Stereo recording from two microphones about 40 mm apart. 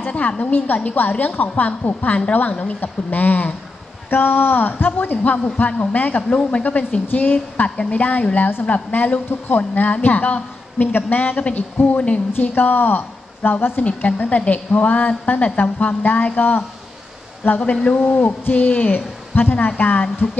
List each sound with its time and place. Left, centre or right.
0.4 s speech: left
4.1 s speech: left
6.2 s speech: left
6.6 s speech: left
7.6 s speech: left
7.9 s a woman's voice: left
13.8 s speech: left